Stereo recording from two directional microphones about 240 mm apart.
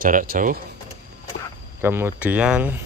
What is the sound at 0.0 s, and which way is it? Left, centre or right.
Speech, right.